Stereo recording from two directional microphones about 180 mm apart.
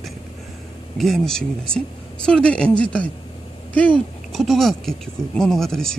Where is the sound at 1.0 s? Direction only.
Centre (ahead or behind).